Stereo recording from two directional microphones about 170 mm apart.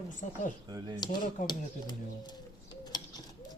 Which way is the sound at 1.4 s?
25° left (ahead or behind).